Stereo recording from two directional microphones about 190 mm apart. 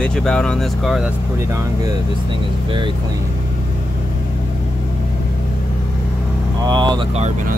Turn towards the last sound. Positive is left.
turn(degrees=-25)  # may be behind; listen again after turning